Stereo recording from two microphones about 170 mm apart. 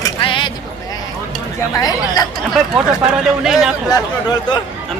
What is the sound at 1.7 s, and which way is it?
Speech, 20° left (ahead or behind).